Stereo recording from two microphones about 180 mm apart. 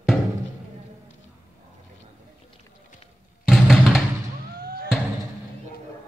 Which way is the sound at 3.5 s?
Centre (ahead or behind).